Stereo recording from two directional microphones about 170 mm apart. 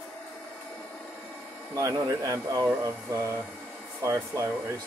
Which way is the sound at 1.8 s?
20° right (ahead or behind).